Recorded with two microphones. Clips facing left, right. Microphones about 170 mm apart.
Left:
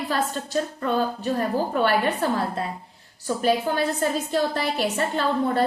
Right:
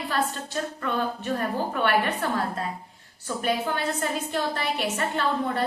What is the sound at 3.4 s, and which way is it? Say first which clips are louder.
A woman's voice: left 4 dB; 35° left (ahead or behind).